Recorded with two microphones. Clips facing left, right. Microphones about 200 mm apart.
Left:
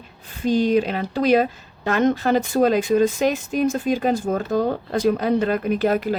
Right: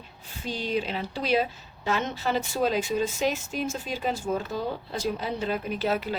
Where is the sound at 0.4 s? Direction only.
50° left (ahead or behind).